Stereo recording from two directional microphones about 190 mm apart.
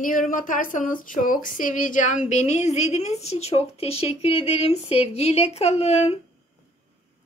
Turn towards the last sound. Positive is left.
turn(degrees=30)  # may be behind; listen again after turning